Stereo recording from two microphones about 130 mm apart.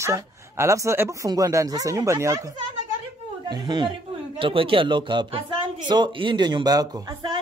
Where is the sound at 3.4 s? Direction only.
35° right (ahead or behind).